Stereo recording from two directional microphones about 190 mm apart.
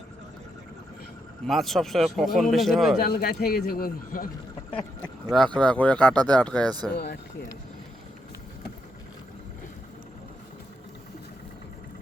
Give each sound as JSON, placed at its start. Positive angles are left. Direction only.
{"t": 1.5, "sound": "a man's voice", "side_deg": 0}
{"t": 3.0, "sound": "speech", "side_deg": 50}
{"t": 5.5, "sound": "a man's voice", "side_deg": 5}
{"t": 6.7, "sound": "speech", "side_deg": -20}
{"t": 6.9, "sound": "speech", "side_deg": 60}